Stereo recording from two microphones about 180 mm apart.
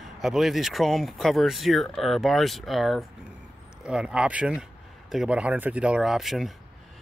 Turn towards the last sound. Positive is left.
turn(degrees=0)  # may be behind; listen again after turning